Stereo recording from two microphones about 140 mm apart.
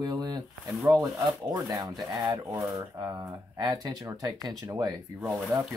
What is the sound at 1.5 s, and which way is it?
Speech, 25° right (ahead or behind).